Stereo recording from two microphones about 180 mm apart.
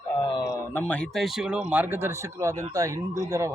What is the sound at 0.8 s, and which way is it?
Speech, 5° left (ahead or behind).